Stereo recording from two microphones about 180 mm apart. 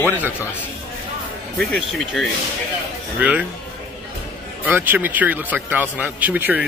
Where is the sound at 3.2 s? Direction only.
5° right (ahead or behind).